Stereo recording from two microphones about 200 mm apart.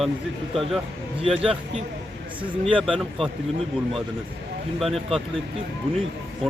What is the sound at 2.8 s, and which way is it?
Speech, centre (ahead or behind).